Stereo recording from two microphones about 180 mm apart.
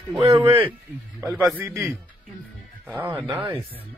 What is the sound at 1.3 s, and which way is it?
Speech, 5° right (ahead or behind).